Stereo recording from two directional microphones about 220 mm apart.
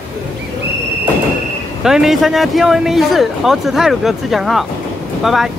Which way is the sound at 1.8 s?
Centre (ahead or behind).